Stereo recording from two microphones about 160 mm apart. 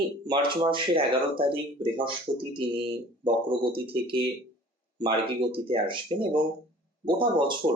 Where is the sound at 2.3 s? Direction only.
30° right (ahead or behind).